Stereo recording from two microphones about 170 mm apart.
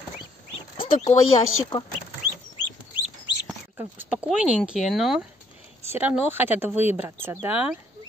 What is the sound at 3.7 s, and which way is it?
Speech, 10° right (ahead or behind).